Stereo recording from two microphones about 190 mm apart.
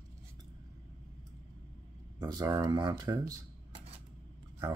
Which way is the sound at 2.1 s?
20° right (ahead or behind).